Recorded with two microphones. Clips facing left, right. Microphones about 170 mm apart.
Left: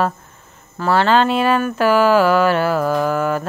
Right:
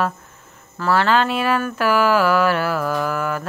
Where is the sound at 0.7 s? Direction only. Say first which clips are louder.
Left 3 dB; 25° left (ahead or behind).